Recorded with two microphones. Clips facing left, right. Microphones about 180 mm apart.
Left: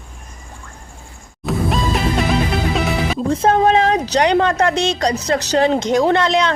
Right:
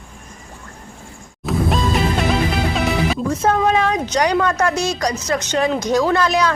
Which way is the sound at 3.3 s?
30° left (ahead or behind).